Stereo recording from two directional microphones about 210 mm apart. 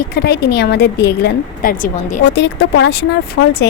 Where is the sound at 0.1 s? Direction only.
50° left (ahead or behind).